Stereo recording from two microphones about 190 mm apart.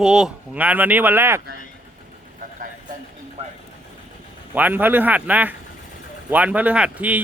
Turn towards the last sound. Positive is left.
turn(degrees=-5)  # may be behind; listen again after turning